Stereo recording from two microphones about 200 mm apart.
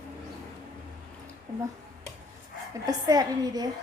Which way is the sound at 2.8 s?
20° right (ahead or behind).